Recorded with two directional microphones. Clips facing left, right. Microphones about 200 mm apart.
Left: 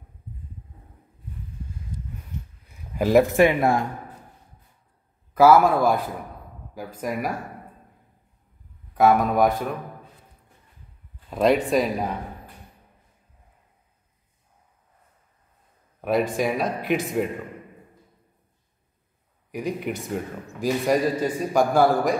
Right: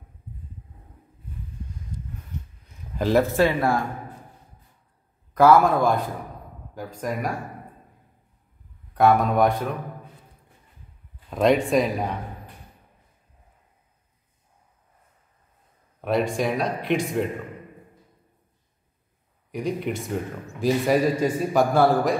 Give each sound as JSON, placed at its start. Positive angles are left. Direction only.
{"t": 3.0, "sound": "speech", "side_deg": 10}
{"t": 5.3, "sound": "a man's voice", "side_deg": 5}
{"t": 8.9, "sound": "a man's voice", "side_deg": 0}
{"t": 11.2, "sound": "a man's voice", "side_deg": 5}
{"t": 16.0, "sound": "a man's voice", "side_deg": 0}
{"t": 19.5, "sound": "a man's voice", "side_deg": 0}